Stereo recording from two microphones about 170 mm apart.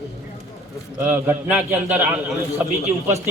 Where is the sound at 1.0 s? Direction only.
10° right (ahead or behind).